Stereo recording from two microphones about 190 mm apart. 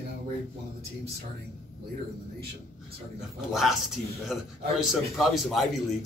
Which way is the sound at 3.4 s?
Centre (ahead or behind).